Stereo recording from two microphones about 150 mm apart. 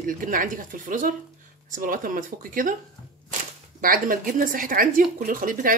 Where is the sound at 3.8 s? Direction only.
70° right (ahead or behind).